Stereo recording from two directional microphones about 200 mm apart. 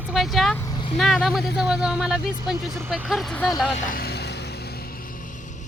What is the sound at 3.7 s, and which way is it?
Vehicle, 45° left (ahead or behind).